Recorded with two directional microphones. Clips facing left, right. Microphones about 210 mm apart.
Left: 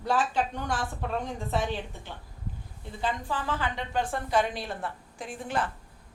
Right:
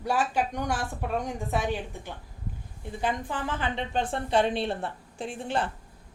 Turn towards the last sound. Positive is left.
turn(degrees=-30)  # may be behind; listen again after turning